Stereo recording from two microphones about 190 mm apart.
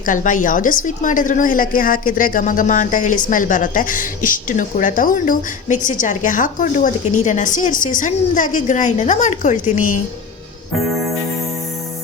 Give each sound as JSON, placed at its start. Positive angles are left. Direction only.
{"t": 0.0, "sound": "a woman's voice", "side_deg": 45}